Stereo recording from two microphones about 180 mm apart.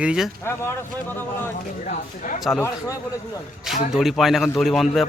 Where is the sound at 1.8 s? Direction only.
45° left (ahead or behind).